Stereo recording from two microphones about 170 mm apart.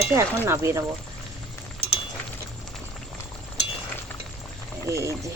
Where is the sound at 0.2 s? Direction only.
15° right (ahead or behind).